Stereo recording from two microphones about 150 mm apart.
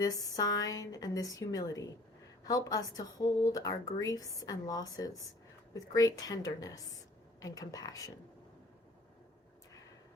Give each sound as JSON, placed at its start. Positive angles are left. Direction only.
{"t": 0.0, "sound": "a woman's voice", "side_deg": 25}